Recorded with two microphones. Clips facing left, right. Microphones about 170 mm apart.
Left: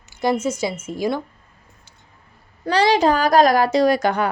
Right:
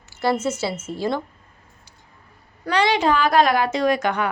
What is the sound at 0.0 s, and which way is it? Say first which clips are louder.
Speech: left 1 dB; 15° left (ahead or behind).